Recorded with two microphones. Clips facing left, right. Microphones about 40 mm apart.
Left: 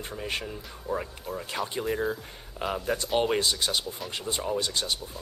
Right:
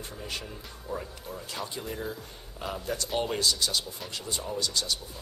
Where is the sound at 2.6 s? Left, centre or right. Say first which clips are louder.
Left 4 dB; left.